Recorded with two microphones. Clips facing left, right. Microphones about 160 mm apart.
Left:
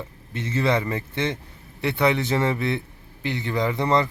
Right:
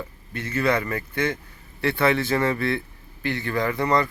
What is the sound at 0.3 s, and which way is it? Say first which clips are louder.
Speech: even; 20° left (ahead or behind).